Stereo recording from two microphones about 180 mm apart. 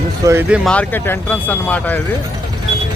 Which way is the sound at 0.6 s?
5° left (ahead or behind).